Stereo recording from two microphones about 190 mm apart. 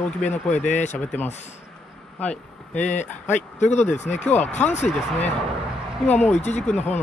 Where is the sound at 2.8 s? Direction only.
40° left (ahead or behind).